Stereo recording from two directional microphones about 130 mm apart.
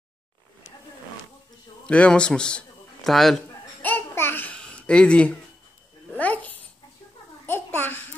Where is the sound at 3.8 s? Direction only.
15° left (ahead or behind).